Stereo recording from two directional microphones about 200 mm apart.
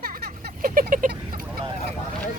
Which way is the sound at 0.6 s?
45° right (ahead or behind).